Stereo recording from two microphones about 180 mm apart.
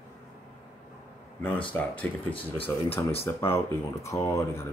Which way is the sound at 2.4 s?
30° left (ahead or behind).